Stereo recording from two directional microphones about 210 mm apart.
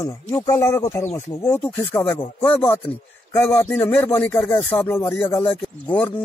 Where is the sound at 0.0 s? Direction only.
15° left (ahead or behind).